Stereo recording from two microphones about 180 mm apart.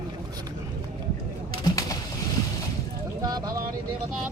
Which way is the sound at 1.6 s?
20° left (ahead or behind).